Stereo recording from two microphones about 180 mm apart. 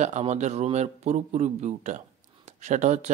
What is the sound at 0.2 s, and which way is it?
Speech, 40° right (ahead or behind).